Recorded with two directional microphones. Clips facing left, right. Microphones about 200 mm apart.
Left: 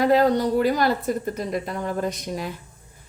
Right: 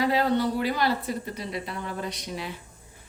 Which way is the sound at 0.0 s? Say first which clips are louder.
Left 5 dB; 45° left (ahead or behind).